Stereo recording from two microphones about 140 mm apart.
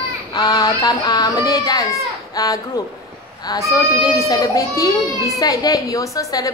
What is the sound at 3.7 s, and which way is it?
A woman's voice, 25° left (ahead or behind).